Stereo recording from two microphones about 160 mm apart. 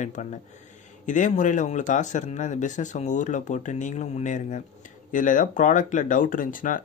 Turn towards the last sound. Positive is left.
turn(degrees=55)  # may be behind; listen again after turning